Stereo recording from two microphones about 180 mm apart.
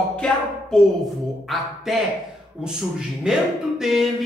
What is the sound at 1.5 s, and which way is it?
Speech, centre (ahead or behind).